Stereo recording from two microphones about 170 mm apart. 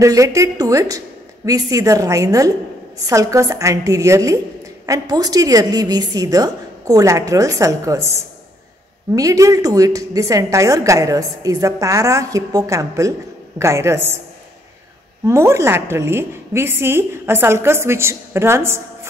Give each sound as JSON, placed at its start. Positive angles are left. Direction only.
{"t": 0.0, "sound": "a woman's voice", "side_deg": -20}
{"t": 15.2, "sound": "a woman's voice", "side_deg": -15}